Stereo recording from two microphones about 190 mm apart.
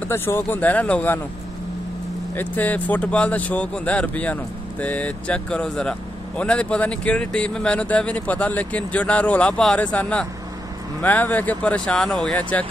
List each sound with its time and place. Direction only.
0.1 s speech: 10° left (ahead or behind)
2.3 s speech: 10° left (ahead or behind)